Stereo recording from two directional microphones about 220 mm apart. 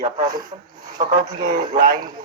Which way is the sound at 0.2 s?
20° right (ahead or behind).